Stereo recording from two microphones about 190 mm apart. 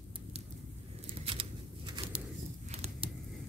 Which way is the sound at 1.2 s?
25° right (ahead or behind).